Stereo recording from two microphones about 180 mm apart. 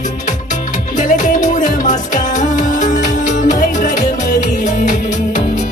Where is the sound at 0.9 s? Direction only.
45° left (ahead or behind).